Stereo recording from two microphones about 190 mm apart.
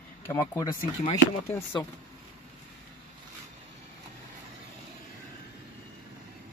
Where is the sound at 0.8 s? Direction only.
30° left (ahead or behind).